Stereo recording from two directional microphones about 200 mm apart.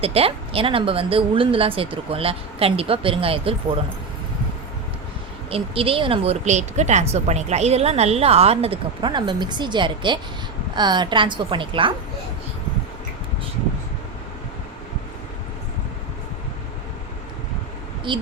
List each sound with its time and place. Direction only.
0.0 s speech: 30° right (ahead or behind)
5.5 s speech: 30° right (ahead or behind)
18.1 s speech: 25° right (ahead or behind)